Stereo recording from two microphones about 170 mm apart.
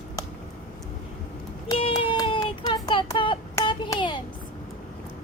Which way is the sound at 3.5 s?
25° left (ahead or behind).